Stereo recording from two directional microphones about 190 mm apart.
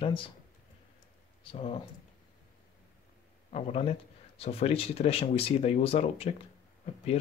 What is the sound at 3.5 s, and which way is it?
Speech, 35° left (ahead or behind).